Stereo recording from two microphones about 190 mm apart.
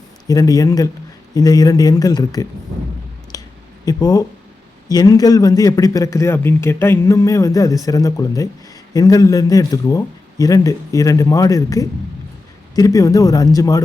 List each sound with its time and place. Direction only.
0.3 s a man's voice: 20° left (ahead or behind)
3.3 s clicking: 20° left (ahead or behind)
3.8 s a man's voice: 20° left (ahead or behind)